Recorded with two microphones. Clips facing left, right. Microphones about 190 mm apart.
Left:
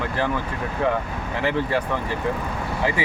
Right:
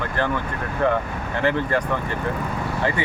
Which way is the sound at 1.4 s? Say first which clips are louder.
Right 1 dB; 5° left (ahead or behind).